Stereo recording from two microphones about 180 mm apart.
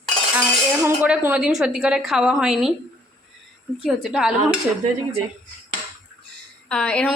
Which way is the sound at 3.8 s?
Centre (ahead or behind).